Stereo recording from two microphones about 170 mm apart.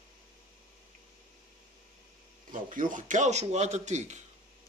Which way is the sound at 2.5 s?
50° right (ahead or behind).